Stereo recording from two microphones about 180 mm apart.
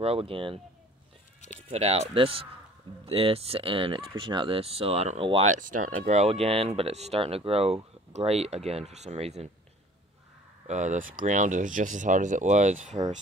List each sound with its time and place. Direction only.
0.0 s speech: 30° right (ahead or behind)
1.7 s speech: 35° right (ahead or behind)
10.7 s speech: 40° right (ahead or behind)